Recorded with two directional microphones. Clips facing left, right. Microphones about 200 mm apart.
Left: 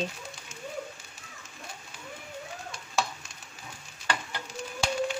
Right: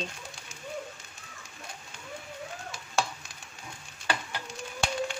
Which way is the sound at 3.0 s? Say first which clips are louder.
Even; centre (ahead or behind).